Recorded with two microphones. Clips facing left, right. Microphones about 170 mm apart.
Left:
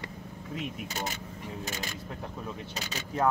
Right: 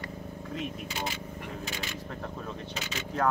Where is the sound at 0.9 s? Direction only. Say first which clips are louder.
Even; 45° left (ahead or behind).